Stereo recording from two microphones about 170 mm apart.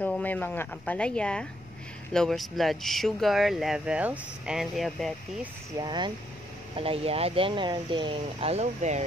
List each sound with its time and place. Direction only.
0.0 s speech: 10° left (ahead or behind)
5.8 s speech: 25° right (ahead or behind)